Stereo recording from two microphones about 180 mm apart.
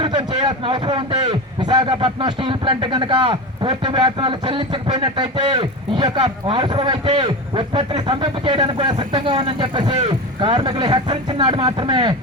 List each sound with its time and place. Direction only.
0.0 s a man's voice: 25° right (ahead or behind)